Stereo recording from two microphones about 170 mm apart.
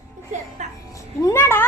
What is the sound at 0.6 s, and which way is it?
Music, 40° right (ahead or behind).